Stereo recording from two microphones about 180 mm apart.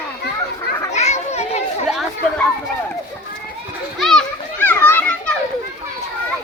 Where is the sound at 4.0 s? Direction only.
5° left (ahead or behind).